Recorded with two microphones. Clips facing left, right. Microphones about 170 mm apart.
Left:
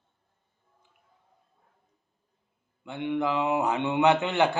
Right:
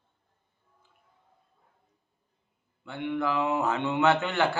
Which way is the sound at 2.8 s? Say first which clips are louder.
Left 2 dB; 20° left (ahead or behind).